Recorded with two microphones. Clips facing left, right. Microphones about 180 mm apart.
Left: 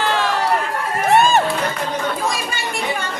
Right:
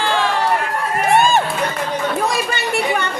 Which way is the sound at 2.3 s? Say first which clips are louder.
Right 5 dB; 65° right (ahead or behind).